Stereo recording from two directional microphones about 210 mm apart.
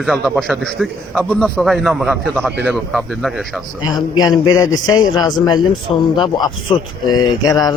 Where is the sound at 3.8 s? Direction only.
20° left (ahead or behind).